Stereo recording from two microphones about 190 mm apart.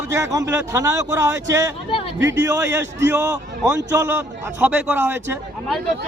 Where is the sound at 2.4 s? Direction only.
15° right (ahead or behind).